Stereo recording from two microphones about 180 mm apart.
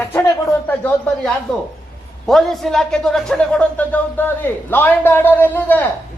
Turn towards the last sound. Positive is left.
turn(degrees=10)  # may be behind; listen again after turning